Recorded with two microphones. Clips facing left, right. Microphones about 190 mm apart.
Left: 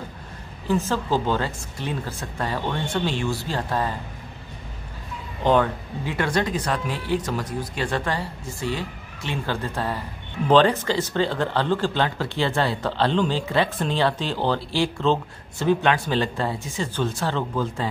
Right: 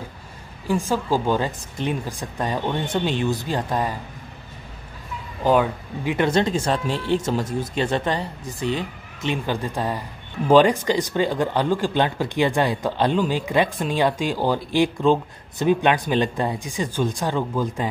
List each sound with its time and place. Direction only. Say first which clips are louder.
0.7 s speech: right 1 dB; 10° right (ahead or behind)
5.4 s speech: right 1 dB; 10° right (ahead or behind)